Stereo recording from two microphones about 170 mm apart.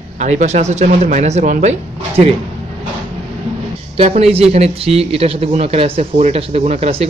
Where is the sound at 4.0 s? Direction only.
35° right (ahead or behind).